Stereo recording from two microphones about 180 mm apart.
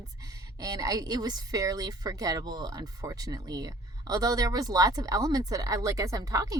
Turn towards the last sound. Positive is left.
turn(degrees=-20)  # may be behind; listen again after turning